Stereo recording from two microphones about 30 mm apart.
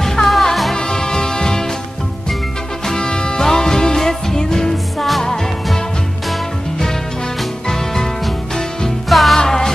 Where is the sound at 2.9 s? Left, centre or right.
Left.